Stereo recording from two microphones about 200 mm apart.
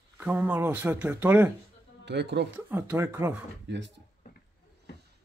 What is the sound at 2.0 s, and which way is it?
Speech, 60° right (ahead or behind).